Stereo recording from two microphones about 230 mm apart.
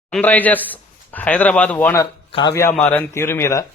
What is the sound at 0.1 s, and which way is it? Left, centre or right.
A man's voice, centre.